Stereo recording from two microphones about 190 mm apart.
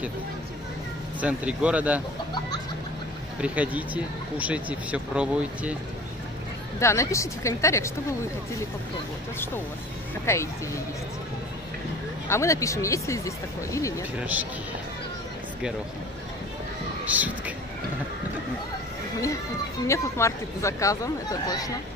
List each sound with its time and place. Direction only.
1.2 s speech: 5° right (ahead or behind)
3.3 s speech: 5° right (ahead or behind)
6.8 s speech: 15° left (ahead or behind)
10.2 s speech: 15° left (ahead or behind)
12.3 s speech: 15° left (ahead or behind)
17.0 s speech: 10° right (ahead or behind)
19.9 s speech: 15° left (ahead or behind)